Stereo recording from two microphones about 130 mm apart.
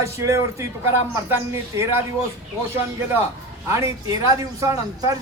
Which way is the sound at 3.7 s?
25° right (ahead or behind).